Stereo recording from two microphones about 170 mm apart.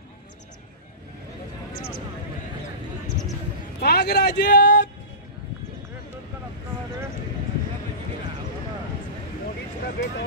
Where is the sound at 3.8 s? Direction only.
70° left (ahead or behind).